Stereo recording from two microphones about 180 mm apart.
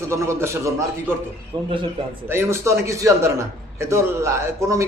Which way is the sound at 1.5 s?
25° right (ahead or behind).